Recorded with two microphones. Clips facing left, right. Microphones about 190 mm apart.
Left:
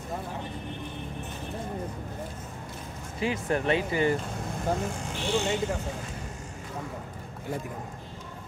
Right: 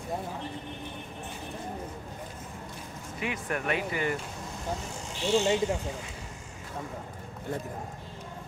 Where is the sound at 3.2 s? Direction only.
30° left (ahead or behind).